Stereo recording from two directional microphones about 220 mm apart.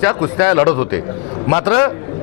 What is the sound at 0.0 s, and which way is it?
A man's voice, 20° left (ahead or behind).